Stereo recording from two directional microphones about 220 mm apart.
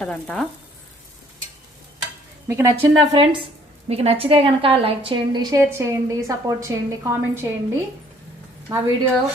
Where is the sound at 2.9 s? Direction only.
20° right (ahead or behind).